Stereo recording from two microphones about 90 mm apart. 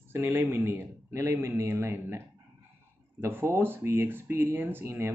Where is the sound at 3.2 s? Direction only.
25° right (ahead or behind).